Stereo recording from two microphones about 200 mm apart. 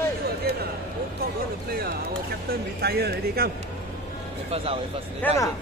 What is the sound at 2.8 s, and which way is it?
Speech, 55° right (ahead or behind).